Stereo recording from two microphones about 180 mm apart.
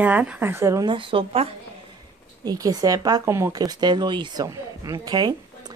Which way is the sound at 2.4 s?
20° right (ahead or behind).